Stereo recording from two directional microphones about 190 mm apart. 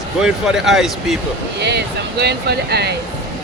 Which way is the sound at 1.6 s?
60° right (ahead or behind).